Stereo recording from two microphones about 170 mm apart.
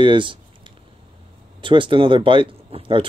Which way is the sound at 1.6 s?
30° right (ahead or behind).